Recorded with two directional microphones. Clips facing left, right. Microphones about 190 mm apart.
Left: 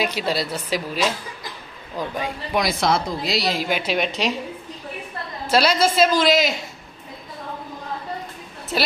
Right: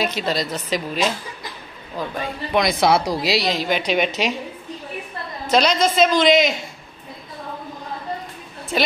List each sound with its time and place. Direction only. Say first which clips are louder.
0.0 s a woman's voice: right 1 dB; 10° left (ahead or behind)
2.6 s speech: right 4 dB; centre (ahead or behind)
3.1 s speech: right 4 dB; 75° right (ahead or behind)
3.3 s speech: right 2 dB; 5° left (ahead or behind)
5.5 s a woman's voice: right 1 dB; 5° left (ahead or behind)
8.7 s speech: right 2 dB; centre (ahead or behind)